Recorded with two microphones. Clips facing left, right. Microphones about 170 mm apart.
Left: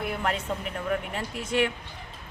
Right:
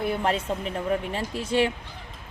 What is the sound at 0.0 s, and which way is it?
Speech, 30° right (ahead or behind).